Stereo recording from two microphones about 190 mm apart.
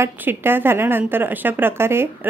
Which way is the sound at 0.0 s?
10° right (ahead or behind).